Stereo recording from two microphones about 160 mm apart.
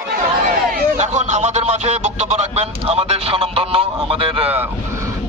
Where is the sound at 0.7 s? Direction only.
45° right (ahead or behind).